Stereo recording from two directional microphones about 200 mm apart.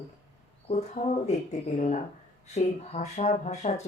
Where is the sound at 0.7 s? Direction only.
35° left (ahead or behind).